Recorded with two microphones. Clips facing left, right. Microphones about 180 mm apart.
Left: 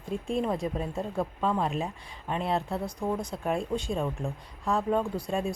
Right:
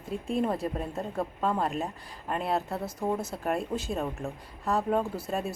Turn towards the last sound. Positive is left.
turn(degrees=-5)  # may be behind; listen again after turning